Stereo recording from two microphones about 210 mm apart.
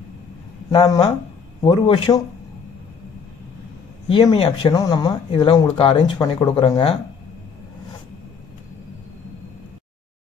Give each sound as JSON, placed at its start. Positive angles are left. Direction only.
{"t": 0.7, "sound": "speech", "side_deg": 25}
{"t": 4.1, "sound": "speech", "side_deg": 20}